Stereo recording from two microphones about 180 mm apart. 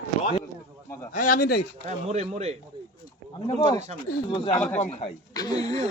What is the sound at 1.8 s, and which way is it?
Speech, 40° right (ahead or behind).